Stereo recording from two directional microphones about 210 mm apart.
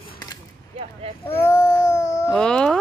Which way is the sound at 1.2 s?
15° left (ahead or behind).